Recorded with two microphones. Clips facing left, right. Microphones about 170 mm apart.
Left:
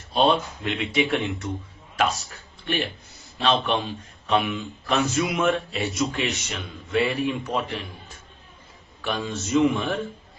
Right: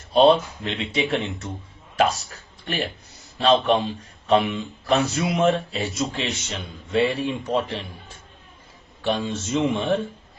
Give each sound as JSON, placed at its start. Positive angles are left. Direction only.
{"t": 0.1, "sound": "a man's voice", "side_deg": -35}
{"t": 9.0, "sound": "speech", "side_deg": -30}